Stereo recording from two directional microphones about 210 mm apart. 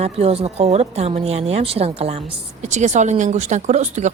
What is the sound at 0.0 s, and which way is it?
Speech, 30° right (ahead or behind).